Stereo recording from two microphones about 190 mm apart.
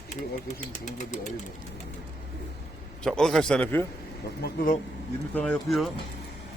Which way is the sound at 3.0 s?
5° left (ahead or behind).